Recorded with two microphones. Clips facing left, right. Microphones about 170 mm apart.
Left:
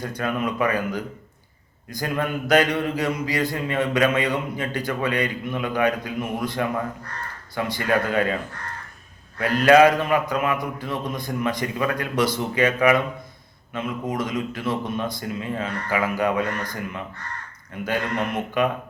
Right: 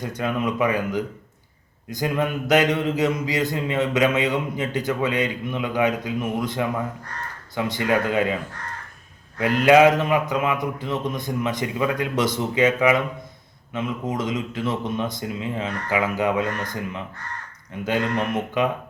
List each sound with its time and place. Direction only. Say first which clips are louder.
0.0 s mantra: right 1 dB; 20° right (ahead or behind)
7.5 s speech: right 1 dB; 20° right (ahead or behind)
9.4 s mantra: even; 20° right (ahead or behind)
18.6 s mantra: left 1 dB; 20° right (ahead or behind)